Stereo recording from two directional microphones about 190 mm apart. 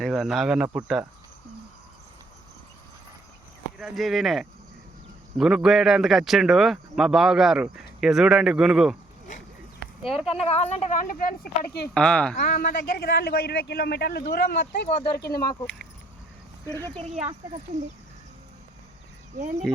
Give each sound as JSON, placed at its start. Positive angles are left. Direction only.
{"t": 0.0, "sound": "speech", "side_deg": 0}
{"t": 3.8, "sound": "speech", "side_deg": 0}
{"t": 10.0, "sound": "speech", "side_deg": 0}
{"t": 10.4, "sound": "a woman's voice", "side_deg": 35}
{"t": 11.9, "sound": "speech", "side_deg": 5}
{"t": 12.5, "sound": "speech", "side_deg": 55}
{"t": 16.7, "sound": "speech", "side_deg": 10}
{"t": 19.4, "sound": "speech", "side_deg": -40}